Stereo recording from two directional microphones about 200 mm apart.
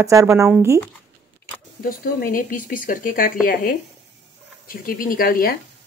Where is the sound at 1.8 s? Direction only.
45° left (ahead or behind).